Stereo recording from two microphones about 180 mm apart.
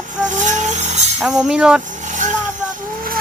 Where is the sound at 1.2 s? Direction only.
5° right (ahead or behind).